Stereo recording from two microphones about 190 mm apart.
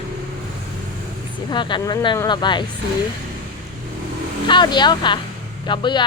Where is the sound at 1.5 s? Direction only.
25° left (ahead or behind).